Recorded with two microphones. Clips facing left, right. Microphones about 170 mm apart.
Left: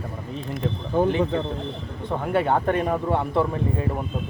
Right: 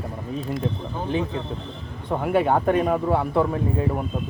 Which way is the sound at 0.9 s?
55° left (ahead or behind).